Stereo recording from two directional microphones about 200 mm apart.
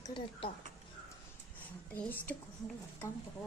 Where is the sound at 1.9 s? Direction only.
10° left (ahead or behind).